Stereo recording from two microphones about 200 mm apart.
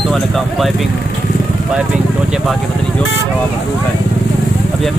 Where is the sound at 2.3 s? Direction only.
Centre (ahead or behind).